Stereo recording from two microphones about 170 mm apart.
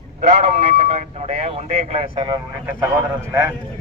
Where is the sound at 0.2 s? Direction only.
40° right (ahead or behind).